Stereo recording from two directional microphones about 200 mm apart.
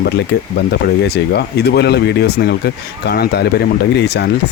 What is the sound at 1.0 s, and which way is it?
Speech, 55° left (ahead or behind).